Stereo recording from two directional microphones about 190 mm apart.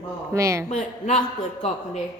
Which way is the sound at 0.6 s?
40° left (ahead or behind).